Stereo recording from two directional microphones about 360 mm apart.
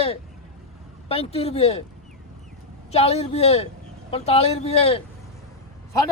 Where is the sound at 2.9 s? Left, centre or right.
Centre.